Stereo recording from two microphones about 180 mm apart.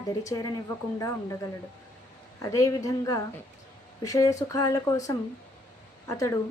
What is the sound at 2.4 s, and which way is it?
A woman's voice, 15° left (ahead or behind).